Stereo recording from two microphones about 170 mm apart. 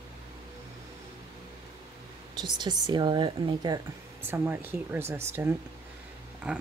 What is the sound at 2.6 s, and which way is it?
A woman's voice, 25° right (ahead or behind).